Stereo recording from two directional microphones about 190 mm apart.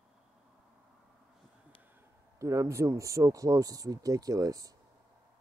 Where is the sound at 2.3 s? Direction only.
15° right (ahead or behind).